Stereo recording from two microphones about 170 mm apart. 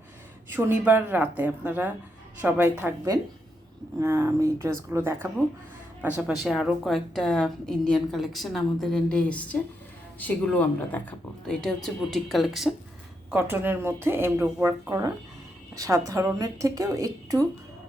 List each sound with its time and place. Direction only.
0.5 s speech: 10° right (ahead or behind)
6.2 s a woman's voice: centre (ahead or behind)
13.3 s a woman's voice: 10° right (ahead or behind)